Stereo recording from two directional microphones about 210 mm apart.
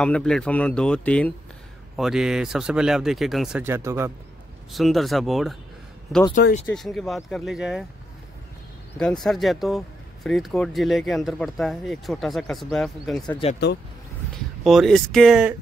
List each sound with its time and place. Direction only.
0.0 s speech: 5° left (ahead or behind)
3.6 s speech: 10° right (ahead or behind)
4.7 s speech: centre (ahead or behind)
6.7 s speech: centre (ahead or behind)
8.9 s speech: centre (ahead or behind)
14.6 s speech: centre (ahead or behind)